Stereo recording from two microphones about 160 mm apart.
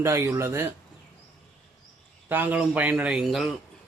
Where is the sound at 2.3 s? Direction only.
10° right (ahead or behind).